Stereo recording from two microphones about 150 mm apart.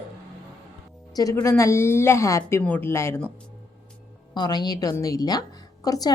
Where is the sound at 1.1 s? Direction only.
25° left (ahead or behind).